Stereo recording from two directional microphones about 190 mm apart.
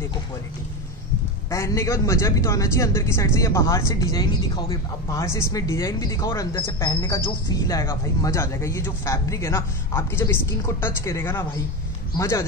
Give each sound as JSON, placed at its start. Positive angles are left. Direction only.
{"t": 1.5, "sound": "speech", "side_deg": 15}